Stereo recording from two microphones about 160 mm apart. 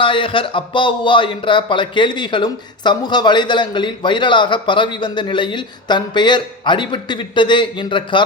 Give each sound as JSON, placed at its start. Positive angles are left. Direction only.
{"t": 0.0, "sound": "speech", "side_deg": 30}